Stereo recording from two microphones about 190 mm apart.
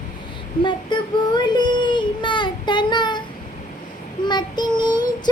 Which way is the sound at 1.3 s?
25° left (ahead or behind).